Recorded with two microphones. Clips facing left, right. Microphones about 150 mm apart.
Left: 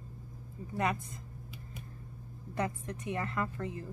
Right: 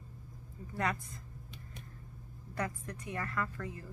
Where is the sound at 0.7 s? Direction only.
20° left (ahead or behind).